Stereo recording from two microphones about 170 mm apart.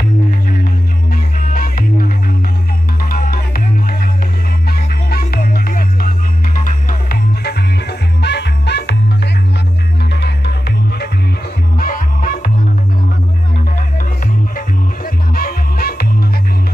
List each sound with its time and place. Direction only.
1.1 s music: 55° left (ahead or behind); by 8.9 s 85° left
11.8 s music: 55° left (ahead or behind)
15.3 s music: 60° left (ahead or behind)